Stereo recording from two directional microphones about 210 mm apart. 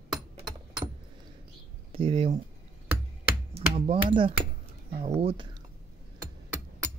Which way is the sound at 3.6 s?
25° right (ahead or behind).